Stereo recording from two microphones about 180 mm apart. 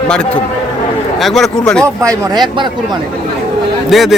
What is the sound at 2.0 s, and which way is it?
Speech, 15° right (ahead or behind).